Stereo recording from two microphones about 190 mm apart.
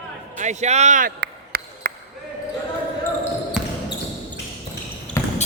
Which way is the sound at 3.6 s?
5° right (ahead or behind).